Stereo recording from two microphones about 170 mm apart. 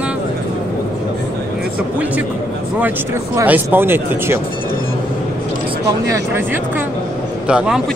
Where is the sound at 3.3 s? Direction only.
10° right (ahead or behind).